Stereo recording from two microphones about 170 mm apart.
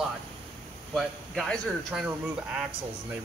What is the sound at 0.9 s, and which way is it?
A man's voice, centre (ahead or behind).